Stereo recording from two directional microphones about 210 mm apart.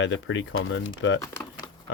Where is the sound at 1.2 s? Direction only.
15° left (ahead or behind).